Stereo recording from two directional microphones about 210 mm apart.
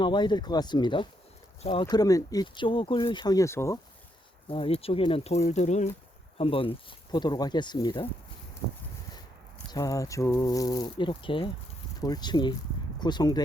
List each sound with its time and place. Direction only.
0.0 s speech: 20° left (ahead or behind)
4.4 s speech: 25° left (ahead or behind)
9.6 s speech: 20° left (ahead or behind)